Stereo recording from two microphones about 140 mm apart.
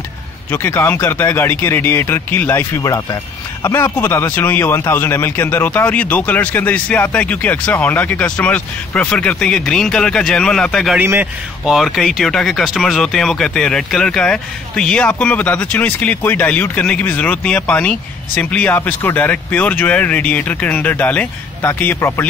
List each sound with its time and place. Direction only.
0.5 s speech: 15° left (ahead or behind)
2.8 s speech: 25° left (ahead or behind); by 11.0 s 5° left (ahead or behind)
11.0 s a man's voice: 15° right (ahead or behind)
11.6 s speech: centre (ahead or behind); by 22.2 s 15° left (ahead or behind)